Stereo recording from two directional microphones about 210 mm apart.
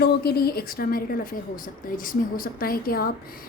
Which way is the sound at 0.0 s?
50° left (ahead or behind).